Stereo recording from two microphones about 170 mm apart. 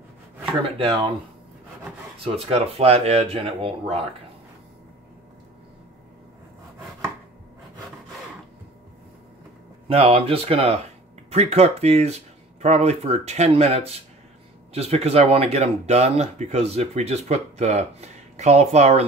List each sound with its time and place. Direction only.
2.2 s speech: 35° right (ahead or behind)
9.8 s speech: 35° right (ahead or behind)